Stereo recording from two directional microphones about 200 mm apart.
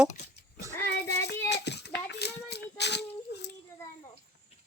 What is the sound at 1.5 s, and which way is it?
Child singing, 55° left (ahead or behind).